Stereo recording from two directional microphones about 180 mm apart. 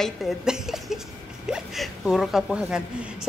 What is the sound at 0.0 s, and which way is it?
A woman's voice, centre (ahead or behind).